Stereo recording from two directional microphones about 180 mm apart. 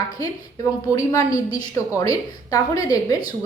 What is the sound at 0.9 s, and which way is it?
A woman's voice, 20° left (ahead or behind).